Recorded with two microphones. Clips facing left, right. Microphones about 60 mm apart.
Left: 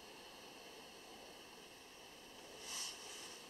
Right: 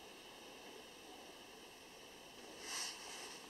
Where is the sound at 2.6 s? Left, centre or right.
Right.